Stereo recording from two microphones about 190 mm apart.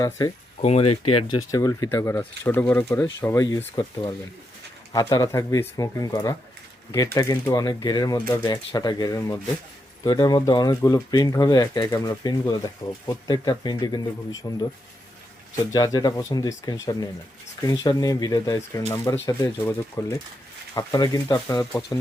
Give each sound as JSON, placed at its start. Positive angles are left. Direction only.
{"t": 0.6, "sound": "speech", "side_deg": 35}
{"t": 15.7, "sound": "speech", "side_deg": 20}